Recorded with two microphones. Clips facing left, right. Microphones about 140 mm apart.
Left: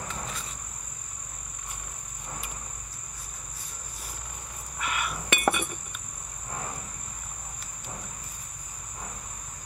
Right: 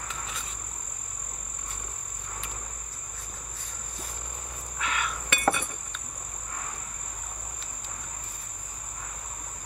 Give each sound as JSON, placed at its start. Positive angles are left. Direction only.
{"t": 4.7, "sound": "insect", "side_deg": 5}
{"t": 5.3, "sound": "chink", "side_deg": 15}